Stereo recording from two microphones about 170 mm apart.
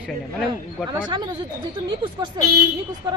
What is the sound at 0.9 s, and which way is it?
Speech, 25° right (ahead or behind).